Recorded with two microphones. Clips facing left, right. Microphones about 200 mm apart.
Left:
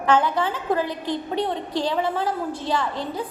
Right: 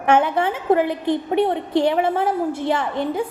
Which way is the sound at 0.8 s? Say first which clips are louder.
Right 6 dB; 60° right (ahead or behind).